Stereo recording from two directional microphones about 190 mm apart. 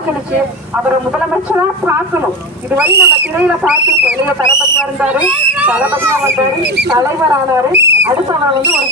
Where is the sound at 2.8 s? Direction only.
60° right (ahead or behind).